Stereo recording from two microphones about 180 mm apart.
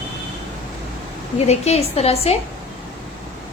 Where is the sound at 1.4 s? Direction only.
35° left (ahead or behind).